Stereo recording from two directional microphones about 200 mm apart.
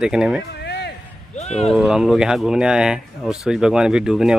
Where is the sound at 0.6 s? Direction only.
55° left (ahead or behind).